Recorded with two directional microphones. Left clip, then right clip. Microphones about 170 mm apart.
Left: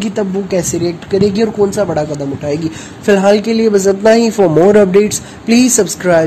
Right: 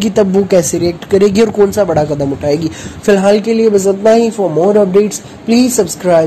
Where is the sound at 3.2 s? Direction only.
Centre (ahead or behind); by 4.3 s 20° left (ahead or behind).